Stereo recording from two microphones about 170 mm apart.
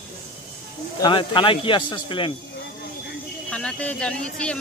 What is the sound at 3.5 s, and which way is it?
A man's voice, 5° left (ahead or behind).